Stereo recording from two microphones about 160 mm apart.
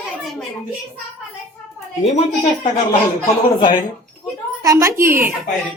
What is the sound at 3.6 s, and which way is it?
Speech, 25° left (ahead or behind).